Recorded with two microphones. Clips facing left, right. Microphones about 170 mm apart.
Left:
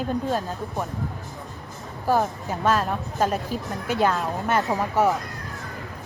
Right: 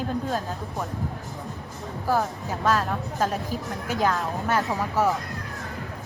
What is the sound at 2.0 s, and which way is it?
A woman's voice, 15° left (ahead or behind).